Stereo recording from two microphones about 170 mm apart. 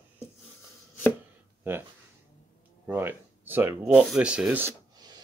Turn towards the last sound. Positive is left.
turn(degrees=-25)  # may be behind; listen again after turning